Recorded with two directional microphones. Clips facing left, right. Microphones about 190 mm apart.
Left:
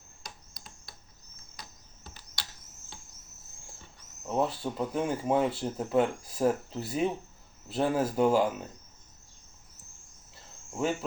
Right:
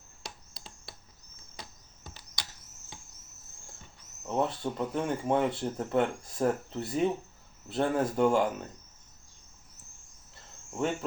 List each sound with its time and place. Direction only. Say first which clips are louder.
0.2 s a sound: right 3 dB; 30° right (ahead or behind)
4.2 s speech: left 1 dB; centre (ahead or behind)
10.7 s speech: left 1 dB; 5° left (ahead or behind)